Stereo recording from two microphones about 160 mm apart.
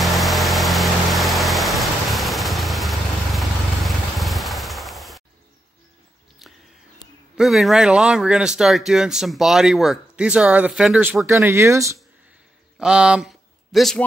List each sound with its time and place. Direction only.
0.0 s a sound: centre (ahead or behind)
7.3 s speech: centre (ahead or behind)
11.2 s speech: 15° right (ahead or behind)
12.7 s speech: 5° right (ahead or behind)